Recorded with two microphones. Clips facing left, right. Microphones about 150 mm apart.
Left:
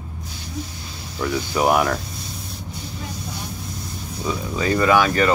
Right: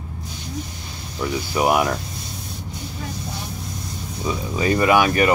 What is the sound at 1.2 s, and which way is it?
Speech, 15° right (ahead or behind).